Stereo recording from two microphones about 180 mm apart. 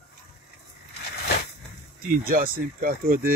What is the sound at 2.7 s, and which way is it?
Speech, 55° right (ahead or behind).